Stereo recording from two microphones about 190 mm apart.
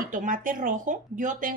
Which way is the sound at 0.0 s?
45° right (ahead or behind).